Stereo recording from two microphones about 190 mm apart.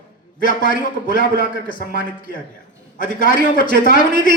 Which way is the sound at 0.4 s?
45° left (ahead or behind).